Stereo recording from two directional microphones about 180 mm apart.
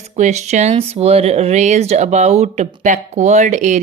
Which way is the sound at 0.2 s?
40° right (ahead or behind).